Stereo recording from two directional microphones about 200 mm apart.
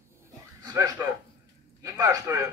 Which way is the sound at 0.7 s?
15° right (ahead or behind).